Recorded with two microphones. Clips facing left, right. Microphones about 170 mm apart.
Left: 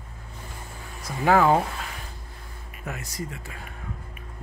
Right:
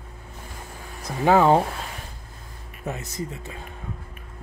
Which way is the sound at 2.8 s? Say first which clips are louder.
Right 3 dB; 20° right (ahead or behind).